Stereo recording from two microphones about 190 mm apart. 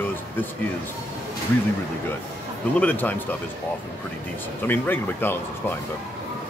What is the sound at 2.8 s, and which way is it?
Speech, 10° left (ahead or behind).